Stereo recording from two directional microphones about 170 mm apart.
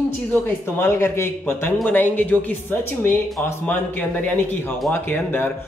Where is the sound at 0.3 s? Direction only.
15° left (ahead or behind).